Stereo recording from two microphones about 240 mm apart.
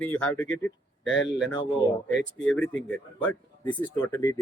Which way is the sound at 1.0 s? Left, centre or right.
Left.